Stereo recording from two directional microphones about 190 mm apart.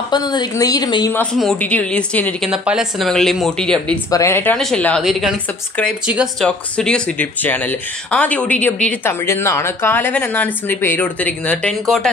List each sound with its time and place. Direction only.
0.1 s a woman's voice: 20° left (ahead or behind)
1.1 s speech: 5° left (ahead or behind)
2.5 s speech: 5° right (ahead or behind)
4.1 s speech: 15° left (ahead or behind)
6.4 s speech: 5° left (ahead or behind)